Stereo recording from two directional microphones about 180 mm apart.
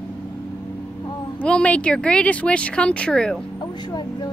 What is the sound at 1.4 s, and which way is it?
Speech, 5° left (ahead or behind).